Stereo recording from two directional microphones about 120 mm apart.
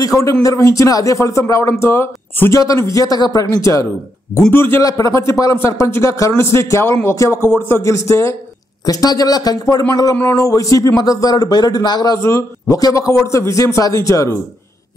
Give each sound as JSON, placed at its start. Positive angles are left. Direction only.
{"t": 0.0, "sound": "a man's voice", "side_deg": 25}
{"t": 12.2, "sound": "a man's voice", "side_deg": 25}